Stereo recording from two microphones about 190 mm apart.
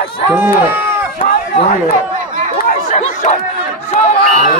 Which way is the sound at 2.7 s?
40° left (ahead or behind).